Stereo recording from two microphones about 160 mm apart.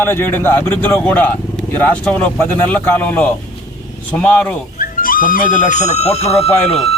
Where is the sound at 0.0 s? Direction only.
15° left (ahead or behind).